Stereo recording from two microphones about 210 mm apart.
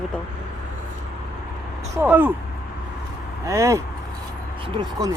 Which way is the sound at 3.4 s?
15° right (ahead or behind).